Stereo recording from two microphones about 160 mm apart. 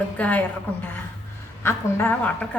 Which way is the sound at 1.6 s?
10° left (ahead or behind).